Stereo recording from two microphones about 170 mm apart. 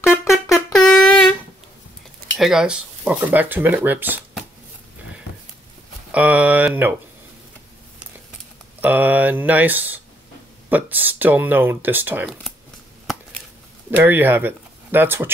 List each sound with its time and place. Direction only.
0.7 s wind instrument: 5° left (ahead or behind)
2.3 s speech: centre (ahead or behind)
6.1 s speech: 10° right (ahead or behind)
8.8 s speech: 10° right (ahead or behind)
13.8 s speech: 10° right (ahead or behind)